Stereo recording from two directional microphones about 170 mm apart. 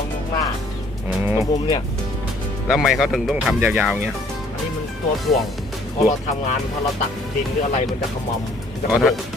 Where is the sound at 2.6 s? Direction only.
Centre (ahead or behind).